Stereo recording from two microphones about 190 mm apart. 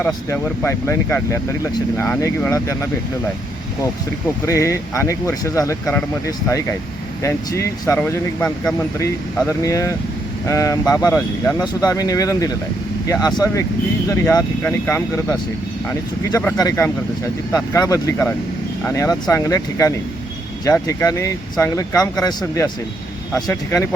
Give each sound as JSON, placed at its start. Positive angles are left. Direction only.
{"t": 0.1, "sound": "speech", "side_deg": 15}
{"t": 4.4, "sound": "speech", "side_deg": 15}